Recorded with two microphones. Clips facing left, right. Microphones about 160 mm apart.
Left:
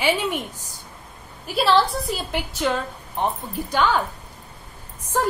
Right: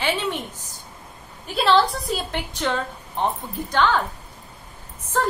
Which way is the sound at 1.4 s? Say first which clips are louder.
Even; 5° left (ahead or behind).